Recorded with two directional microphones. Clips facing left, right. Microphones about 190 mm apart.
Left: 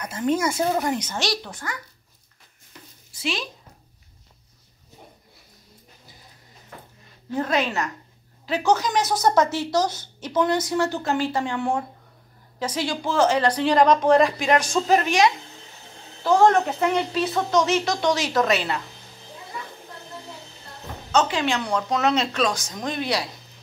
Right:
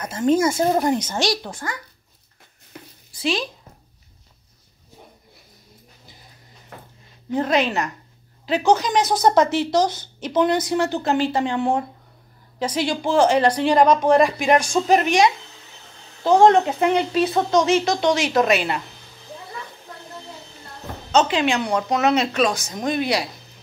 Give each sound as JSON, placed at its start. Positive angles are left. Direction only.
{"t": 0.0, "sound": "speech", "side_deg": -30}
{"t": 1.0, "sound": "speech", "side_deg": -40}
{"t": 2.7, "sound": "a sound", "side_deg": -60}
{"t": 3.2, "sound": "speech", "side_deg": -35}
{"t": 7.2, "sound": "speech", "side_deg": -20}
{"t": 10.3, "sound": "speech", "side_deg": -25}
{"t": 21.1, "sound": "speech", "side_deg": -20}